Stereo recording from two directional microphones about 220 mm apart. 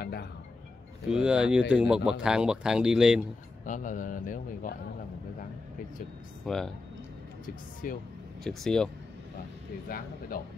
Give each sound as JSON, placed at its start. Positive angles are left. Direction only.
{"t": 0.0, "sound": "music", "side_deg": 45}
{"t": 1.1, "sound": "speech", "side_deg": -5}
{"t": 3.6, "sound": "speech", "side_deg": 35}
{"t": 6.4, "sound": "speech", "side_deg": 0}
{"t": 7.4, "sound": "speech", "side_deg": 40}
{"t": 8.5, "sound": "speech", "side_deg": 0}
{"t": 9.8, "sound": "speech", "side_deg": 40}